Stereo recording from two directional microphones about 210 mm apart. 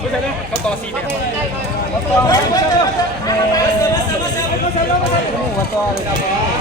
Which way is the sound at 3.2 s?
15° left (ahead or behind).